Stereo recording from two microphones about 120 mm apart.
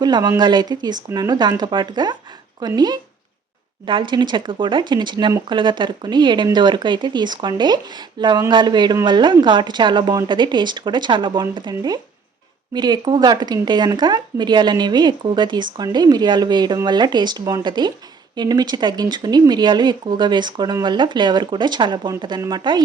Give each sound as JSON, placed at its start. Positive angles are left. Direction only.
{"t": 0.0, "sound": "speech", "side_deg": -35}